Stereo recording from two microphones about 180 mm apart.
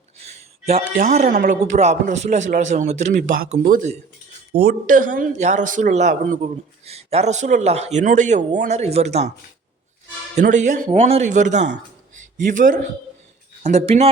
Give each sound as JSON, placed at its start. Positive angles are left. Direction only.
{"t": 0.9, "sound": "speech", "side_deg": -45}
{"t": 4.5, "sound": "speech", "side_deg": -30}
{"t": 4.9, "sound": "speech", "side_deg": -50}
{"t": 10.3, "sound": "speech", "side_deg": -40}
{"t": 13.6, "sound": "speech", "side_deg": -40}